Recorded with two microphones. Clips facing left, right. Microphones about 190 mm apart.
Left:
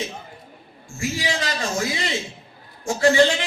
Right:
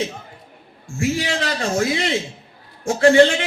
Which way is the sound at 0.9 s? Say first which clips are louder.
Right 4 dB; 60° right (ahead or behind).